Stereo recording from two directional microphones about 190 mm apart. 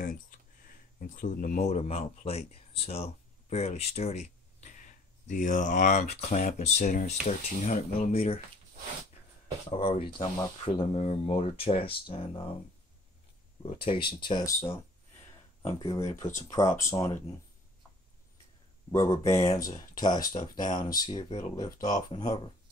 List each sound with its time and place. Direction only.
0.7 s speech: 45° left (ahead or behind)
9.7 s speech: 30° left (ahead or behind)
13.6 s speech: 30° left (ahead or behind)
18.9 s speech: 15° left (ahead or behind)